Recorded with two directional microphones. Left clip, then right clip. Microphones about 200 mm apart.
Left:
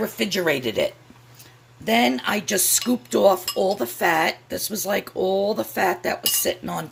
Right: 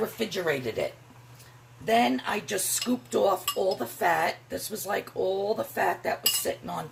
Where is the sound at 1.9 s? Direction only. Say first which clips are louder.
Left 4 dB; 55° left (ahead or behind).